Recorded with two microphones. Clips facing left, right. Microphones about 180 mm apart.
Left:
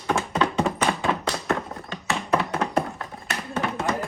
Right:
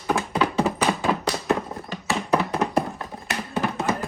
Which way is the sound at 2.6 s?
15° right (ahead or behind).